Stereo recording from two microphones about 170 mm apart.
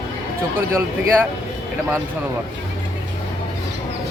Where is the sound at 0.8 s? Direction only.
15° right (ahead or behind).